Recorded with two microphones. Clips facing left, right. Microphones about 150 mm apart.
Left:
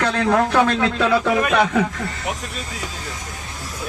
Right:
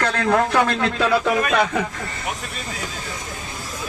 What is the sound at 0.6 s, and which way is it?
Speech, 5° right (ahead or behind).